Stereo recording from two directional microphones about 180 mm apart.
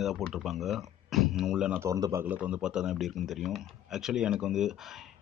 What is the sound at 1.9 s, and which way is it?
Speech, 15° right (ahead or behind).